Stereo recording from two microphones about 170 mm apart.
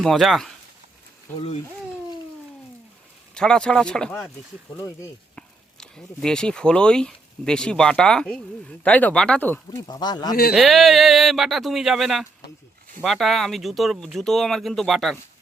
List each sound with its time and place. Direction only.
0.0 s speech: centre (ahead or behind)
3.3 s speech: 5° left (ahead or behind)
5.4 s speech: 5° left (ahead or behind)
9.8 s speech: 25° left (ahead or behind)
10.5 s speech: centre (ahead or behind)